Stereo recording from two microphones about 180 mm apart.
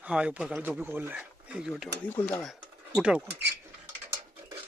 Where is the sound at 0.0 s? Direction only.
5° right (ahead or behind).